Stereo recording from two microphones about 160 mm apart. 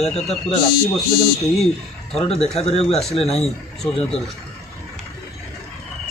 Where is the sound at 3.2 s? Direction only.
Centre (ahead or behind).